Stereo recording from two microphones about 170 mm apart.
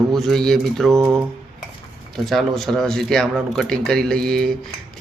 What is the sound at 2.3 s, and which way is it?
Speech, centre (ahead or behind).